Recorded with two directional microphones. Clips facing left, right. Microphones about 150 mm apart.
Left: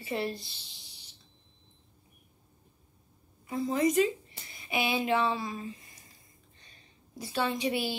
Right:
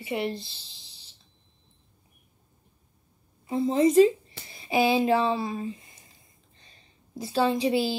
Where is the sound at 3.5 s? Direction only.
25° right (ahead or behind).